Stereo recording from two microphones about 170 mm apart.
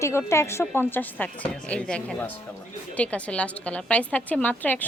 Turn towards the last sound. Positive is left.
turn(degrees=10)  # may be behind; listen again after turning